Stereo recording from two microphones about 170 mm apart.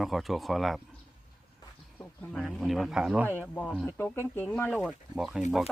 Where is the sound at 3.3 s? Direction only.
10° left (ahead or behind).